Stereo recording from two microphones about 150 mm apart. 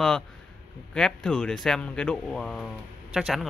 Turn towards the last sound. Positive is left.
turn(degrees=-5)  # may be behind; listen again after turning